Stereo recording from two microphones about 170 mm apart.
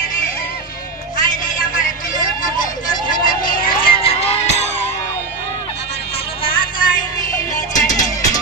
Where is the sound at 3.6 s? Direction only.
35° left (ahead or behind).